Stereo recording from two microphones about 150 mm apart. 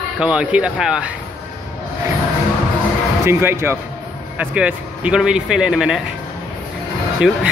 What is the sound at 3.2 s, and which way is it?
A man's voice, 15° right (ahead or behind).